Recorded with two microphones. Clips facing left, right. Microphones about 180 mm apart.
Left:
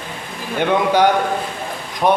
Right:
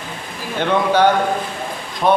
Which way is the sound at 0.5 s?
15° left (ahead or behind).